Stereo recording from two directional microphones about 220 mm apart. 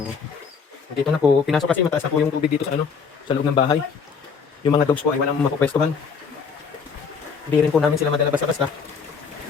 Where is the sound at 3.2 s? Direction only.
20° left (ahead or behind).